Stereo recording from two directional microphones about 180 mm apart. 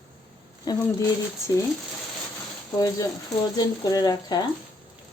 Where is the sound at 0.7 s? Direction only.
20° left (ahead or behind).